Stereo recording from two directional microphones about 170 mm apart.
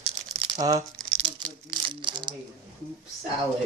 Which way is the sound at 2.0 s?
25° right (ahead or behind).